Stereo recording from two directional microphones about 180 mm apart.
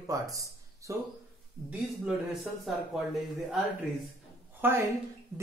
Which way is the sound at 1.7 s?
5° right (ahead or behind).